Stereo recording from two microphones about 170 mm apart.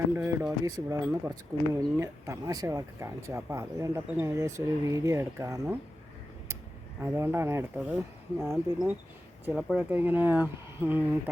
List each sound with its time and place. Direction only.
0.1 s speech: 15° right (ahead or behind)
7.0 s speech: 15° right (ahead or behind)
9.6 s speech: 5° right (ahead or behind)